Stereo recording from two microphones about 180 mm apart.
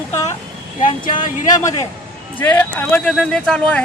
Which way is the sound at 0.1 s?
15° left (ahead or behind).